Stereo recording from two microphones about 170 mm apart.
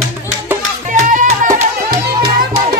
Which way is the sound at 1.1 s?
50° right (ahead or behind).